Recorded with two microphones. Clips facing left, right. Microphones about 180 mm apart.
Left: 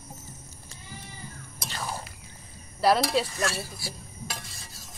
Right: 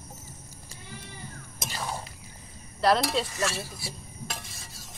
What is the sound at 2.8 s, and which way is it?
Speech, 5° left (ahead or behind).